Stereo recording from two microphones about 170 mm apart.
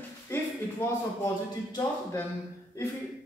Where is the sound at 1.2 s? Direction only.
20° left (ahead or behind).